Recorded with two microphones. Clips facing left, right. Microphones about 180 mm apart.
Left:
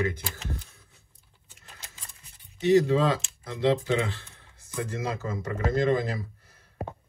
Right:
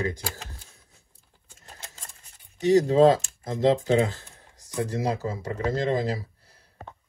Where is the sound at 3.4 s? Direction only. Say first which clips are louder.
Right 3 dB; 40° right (ahead or behind).